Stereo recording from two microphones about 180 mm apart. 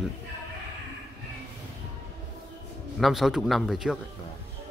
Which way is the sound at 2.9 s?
Centre (ahead or behind).